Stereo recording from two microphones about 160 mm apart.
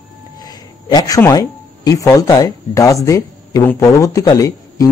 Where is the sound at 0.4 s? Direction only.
25° left (ahead or behind).